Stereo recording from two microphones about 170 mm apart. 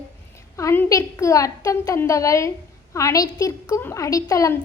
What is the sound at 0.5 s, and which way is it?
A child's voice, 15° left (ahead or behind).